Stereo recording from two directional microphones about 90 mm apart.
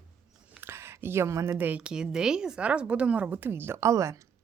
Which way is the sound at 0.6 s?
30° right (ahead or behind).